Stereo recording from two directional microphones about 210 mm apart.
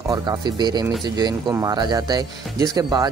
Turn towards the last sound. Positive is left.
turn(degrees=-20)  # may be behind; listen again after turning